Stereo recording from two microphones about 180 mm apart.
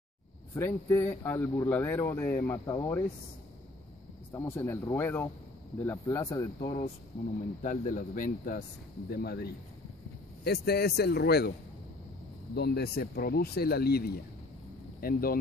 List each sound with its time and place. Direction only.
0.6 s a man's voice: 10° left (ahead or behind)
4.3 s a man's voice: 15° left (ahead or behind)
7.6 s speech: 45° left (ahead or behind)
9.1 s speech: 60° left (ahead or behind)
12.5 s speech: 65° left (ahead or behind)